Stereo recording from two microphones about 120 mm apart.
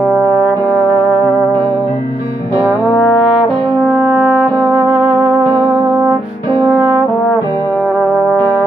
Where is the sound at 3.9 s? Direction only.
15° right (ahead or behind).